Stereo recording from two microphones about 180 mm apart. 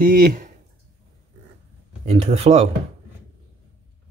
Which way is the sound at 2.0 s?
35° right (ahead or behind).